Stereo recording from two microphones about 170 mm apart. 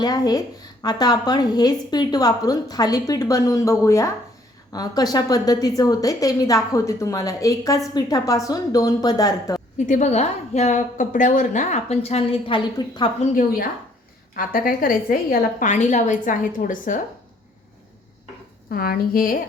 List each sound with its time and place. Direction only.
0.0 s a woman's voice: 20° left (ahead or behind)
9.7 s a woman's voice: 45° left (ahead or behind); by 13.1 s 30° left (ahead or behind)
13.1 s a woman's voice: 40° left (ahead or behind)
14.3 s a woman's voice: 55° left (ahead or behind)
15.7 s a woman's voice: 45° left (ahead or behind)
18.7 s a woman's voice: 60° left (ahead or behind)